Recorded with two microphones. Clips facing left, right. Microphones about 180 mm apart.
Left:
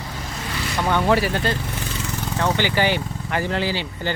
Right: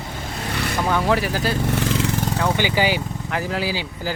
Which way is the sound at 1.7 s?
80° right.